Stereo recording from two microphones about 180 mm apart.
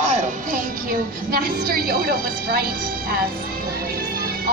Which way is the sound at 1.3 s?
55° right (ahead or behind).